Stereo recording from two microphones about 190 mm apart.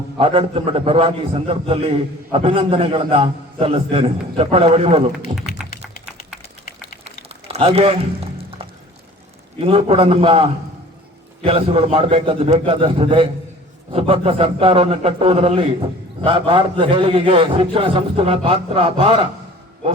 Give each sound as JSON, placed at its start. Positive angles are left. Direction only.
{"t": 0.2, "sound": "a man's voice", "side_deg": -30}
{"t": 7.0, "sound": "a sound", "side_deg": -30}
{"t": 9.6, "sound": "a man's voice", "side_deg": -30}